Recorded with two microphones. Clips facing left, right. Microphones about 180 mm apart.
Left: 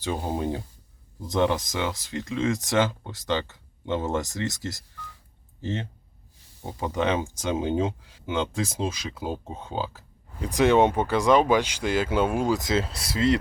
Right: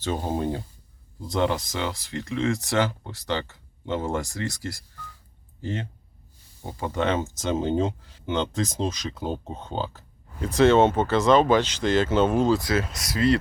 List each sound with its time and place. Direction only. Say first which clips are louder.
0.0 s speech: right 1 dB; 10° left (ahead or behind)